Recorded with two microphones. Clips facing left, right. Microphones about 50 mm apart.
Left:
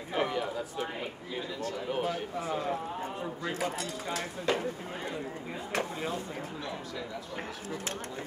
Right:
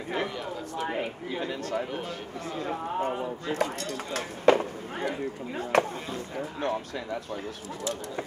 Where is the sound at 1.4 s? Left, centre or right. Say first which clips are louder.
Right 5 dB; right.